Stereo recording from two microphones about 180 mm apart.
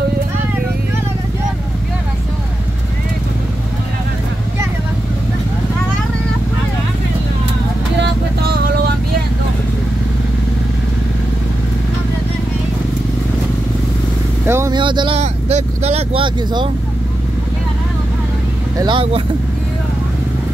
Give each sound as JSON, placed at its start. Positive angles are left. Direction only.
{"t": 8.0, "sound": "music", "side_deg": -65}
{"t": 14.4, "sound": "vehicle", "side_deg": -15}
{"t": 14.8, "sound": "speech", "side_deg": -25}
{"t": 18.8, "sound": "speech", "side_deg": -25}